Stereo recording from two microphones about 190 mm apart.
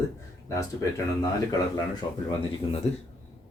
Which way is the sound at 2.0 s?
30° left (ahead or behind).